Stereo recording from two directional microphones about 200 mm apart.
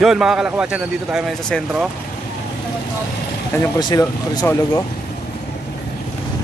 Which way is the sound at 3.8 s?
20° left (ahead or behind).